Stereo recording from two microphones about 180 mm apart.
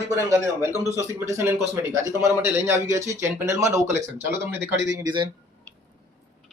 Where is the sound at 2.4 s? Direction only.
15° right (ahead or behind).